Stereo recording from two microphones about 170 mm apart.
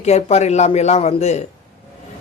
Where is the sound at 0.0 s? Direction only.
40° left (ahead or behind).